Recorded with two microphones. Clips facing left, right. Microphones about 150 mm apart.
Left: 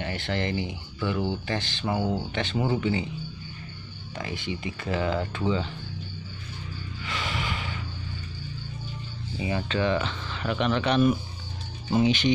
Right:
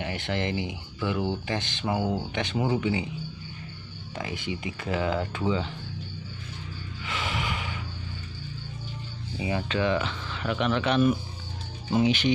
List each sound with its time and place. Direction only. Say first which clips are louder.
0.0 s speech: even; 15° right (ahead or behind)
4.1 s speech: even; 20° right (ahead or behind)
7.1 s a sound: right 1 dB; 20° right (ahead or behind)
9.6 s speech: even; 10° right (ahead or behind)